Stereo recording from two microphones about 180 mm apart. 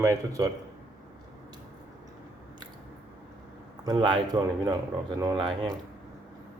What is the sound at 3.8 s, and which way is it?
Speech, 20° right (ahead or behind).